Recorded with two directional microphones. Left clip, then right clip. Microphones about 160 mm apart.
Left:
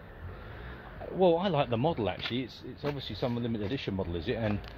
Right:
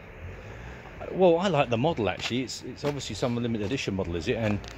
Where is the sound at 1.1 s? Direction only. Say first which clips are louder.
Right 4 dB; 15° right (ahead or behind).